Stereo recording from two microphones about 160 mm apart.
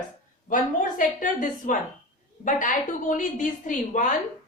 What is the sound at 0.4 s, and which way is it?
A woman's voice, 55° left (ahead or behind).